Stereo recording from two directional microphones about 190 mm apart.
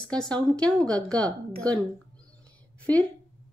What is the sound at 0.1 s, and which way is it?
A woman's voice, 5° left (ahead or behind).